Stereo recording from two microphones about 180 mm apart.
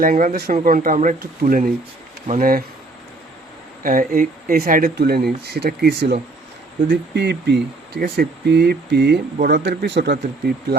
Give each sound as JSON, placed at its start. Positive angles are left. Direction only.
{"t": 0.0, "sound": "speech", "side_deg": -50}
{"t": 3.8, "sound": "speech", "side_deg": -50}